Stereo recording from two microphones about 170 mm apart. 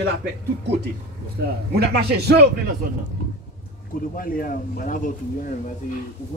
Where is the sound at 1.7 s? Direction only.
70° right (ahead or behind).